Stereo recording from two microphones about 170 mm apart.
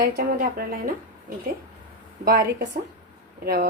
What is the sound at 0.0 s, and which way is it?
Speech, 60° right (ahead or behind).